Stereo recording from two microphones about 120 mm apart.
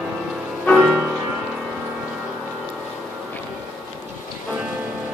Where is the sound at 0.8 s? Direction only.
5° right (ahead or behind).